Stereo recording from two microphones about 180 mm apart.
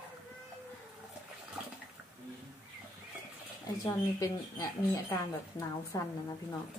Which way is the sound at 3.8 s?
20° left (ahead or behind).